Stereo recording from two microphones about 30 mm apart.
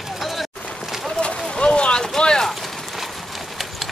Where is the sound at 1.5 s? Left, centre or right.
Left.